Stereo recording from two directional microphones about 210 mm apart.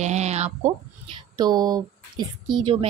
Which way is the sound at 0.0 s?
30° right (ahead or behind).